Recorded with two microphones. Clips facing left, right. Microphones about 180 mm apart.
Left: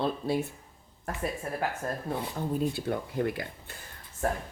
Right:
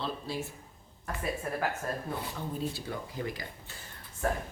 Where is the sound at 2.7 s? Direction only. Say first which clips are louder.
Left 7 dB; 55° left (ahead or behind).